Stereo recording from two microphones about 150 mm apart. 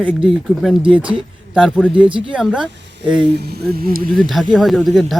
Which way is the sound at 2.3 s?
5° right (ahead or behind).